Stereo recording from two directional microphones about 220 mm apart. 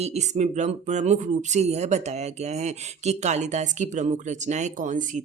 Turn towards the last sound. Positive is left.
turn(degrees=-35)  # may be behind; listen again after turning